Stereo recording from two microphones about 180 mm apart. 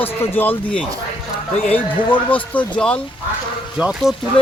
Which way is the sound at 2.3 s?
10° left (ahead or behind).